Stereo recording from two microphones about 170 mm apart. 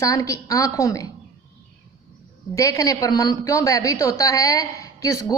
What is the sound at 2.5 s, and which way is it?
A woman's voice, 20° left (ahead or behind).